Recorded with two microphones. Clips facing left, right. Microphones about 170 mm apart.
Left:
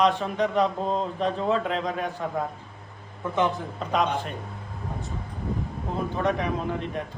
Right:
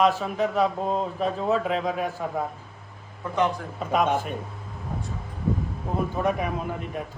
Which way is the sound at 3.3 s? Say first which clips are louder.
Even; 20° left (ahead or behind).